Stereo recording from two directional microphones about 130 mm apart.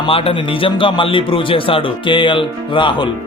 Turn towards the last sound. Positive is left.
turn(degrees=40)  # may be behind; listen again after turning